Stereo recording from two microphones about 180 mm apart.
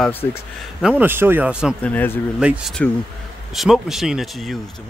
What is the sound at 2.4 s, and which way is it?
Speech, 5° right (ahead or behind).